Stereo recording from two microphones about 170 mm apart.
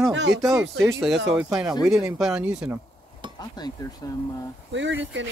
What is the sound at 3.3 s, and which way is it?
Speech, 25° left (ahead or behind).